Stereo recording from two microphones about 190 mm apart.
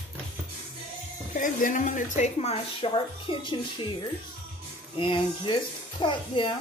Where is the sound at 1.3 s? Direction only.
45° left (ahead or behind); by 3.9 s 25° left (ahead or behind).